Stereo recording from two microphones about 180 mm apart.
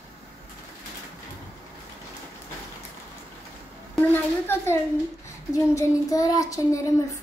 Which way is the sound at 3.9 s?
15° left (ahead or behind).